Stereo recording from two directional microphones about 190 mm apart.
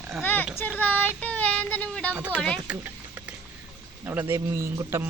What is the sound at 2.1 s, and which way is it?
Speech, 5° right (ahead or behind).